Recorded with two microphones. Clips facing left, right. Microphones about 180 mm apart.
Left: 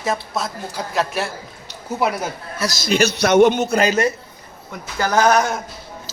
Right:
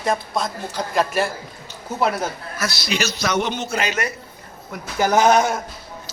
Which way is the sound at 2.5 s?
40° left (ahead or behind).